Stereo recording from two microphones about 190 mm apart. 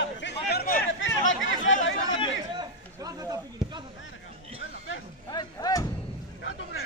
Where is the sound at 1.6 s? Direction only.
90° left.